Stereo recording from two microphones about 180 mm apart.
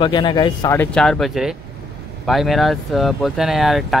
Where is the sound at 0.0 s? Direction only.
25° left (ahead or behind).